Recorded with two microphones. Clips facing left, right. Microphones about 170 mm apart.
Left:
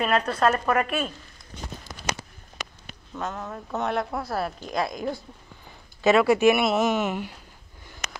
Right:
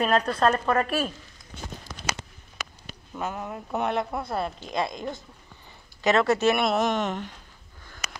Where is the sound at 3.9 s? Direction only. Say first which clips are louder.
Even; centre (ahead or behind).